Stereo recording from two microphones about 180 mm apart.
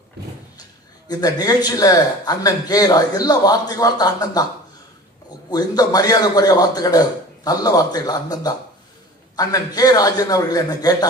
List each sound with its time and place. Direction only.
0.6 s speech: 20° left (ahead or behind)
5.5 s speech: 20° left (ahead or behind)